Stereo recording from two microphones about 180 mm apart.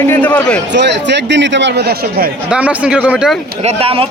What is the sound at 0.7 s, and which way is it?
Speech, 75° right (ahead or behind).